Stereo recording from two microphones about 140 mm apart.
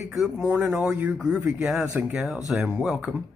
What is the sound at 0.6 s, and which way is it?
Speech, 5° right (ahead or behind).